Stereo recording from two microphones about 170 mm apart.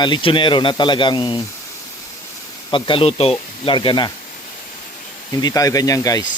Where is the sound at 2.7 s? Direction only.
30° left (ahead or behind).